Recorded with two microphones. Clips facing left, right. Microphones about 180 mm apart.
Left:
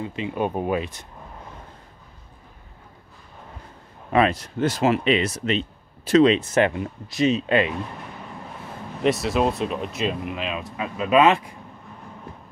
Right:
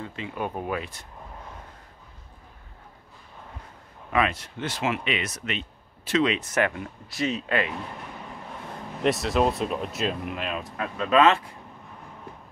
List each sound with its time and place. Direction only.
0.0 s speech: 20° left (ahead or behind)
4.1 s speech: 35° left (ahead or behind)
9.0 s speech: centre (ahead or behind)